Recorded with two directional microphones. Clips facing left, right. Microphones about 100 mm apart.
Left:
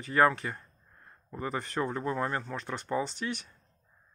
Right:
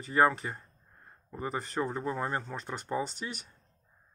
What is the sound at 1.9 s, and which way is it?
Speech, 15° right (ahead or behind).